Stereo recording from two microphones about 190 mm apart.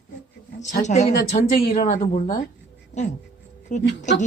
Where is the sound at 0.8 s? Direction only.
40° left (ahead or behind).